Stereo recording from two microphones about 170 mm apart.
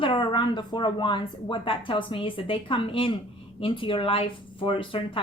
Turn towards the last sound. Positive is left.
turn(degrees=30)  # may be behind; listen again after turning